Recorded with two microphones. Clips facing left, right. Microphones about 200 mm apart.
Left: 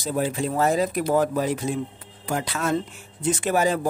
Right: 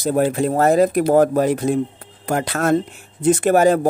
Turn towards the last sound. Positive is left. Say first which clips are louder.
# right 8 dB
turn(degrees=-55)  # may be behind; listen again after turning